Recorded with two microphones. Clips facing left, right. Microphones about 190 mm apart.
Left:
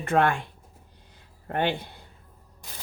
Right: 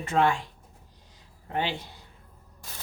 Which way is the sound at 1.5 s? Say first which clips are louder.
Left 4 dB; 55° left (ahead or behind).